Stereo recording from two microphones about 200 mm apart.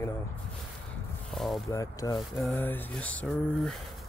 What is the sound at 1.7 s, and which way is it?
Speech, 15° left (ahead or behind).